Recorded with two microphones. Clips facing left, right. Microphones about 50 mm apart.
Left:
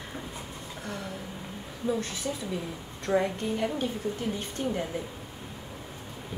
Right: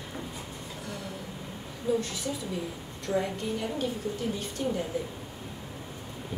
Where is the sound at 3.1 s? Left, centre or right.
Left.